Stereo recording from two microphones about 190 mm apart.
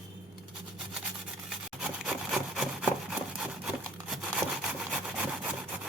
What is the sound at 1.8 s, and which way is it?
Wood, 5° right (ahead or behind).